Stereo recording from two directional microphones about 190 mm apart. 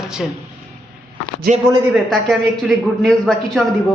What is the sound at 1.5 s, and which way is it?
Speech, 45° right (ahead or behind).